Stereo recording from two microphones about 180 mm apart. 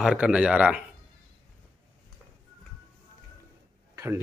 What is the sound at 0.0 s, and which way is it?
Speech, 5° right (ahead or behind).